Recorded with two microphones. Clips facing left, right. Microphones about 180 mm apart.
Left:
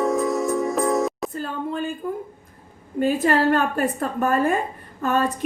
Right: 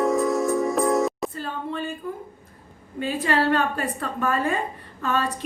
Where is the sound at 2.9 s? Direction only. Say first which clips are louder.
Left 4 dB; 45° left (ahead or behind).